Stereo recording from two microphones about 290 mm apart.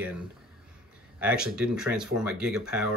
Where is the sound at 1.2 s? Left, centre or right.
Centre.